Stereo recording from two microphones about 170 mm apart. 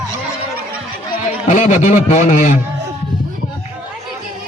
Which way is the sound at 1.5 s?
45° left (ahead or behind).